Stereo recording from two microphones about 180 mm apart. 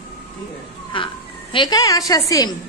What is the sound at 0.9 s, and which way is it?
A woman's voice, 30° left (ahead or behind).